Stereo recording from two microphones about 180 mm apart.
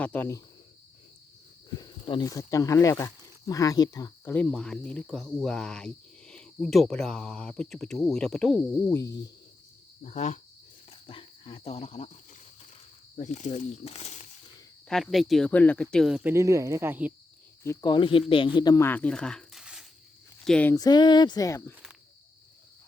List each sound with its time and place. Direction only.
0.0 s speech: 10° left (ahead or behind)
1.8 s speech: 25° left (ahead or behind)
4.4 s speech: 5° left (ahead or behind)
8.9 s speech: 15° left (ahead or behind)
10.0 s speech: 40° left (ahead or behind)
11.0 s speech: 30° left (ahead or behind)
14.8 s speech: centre (ahead or behind)
17.6 s speech: 20° left (ahead or behind)
20.7 s speech: 20° left (ahead or behind)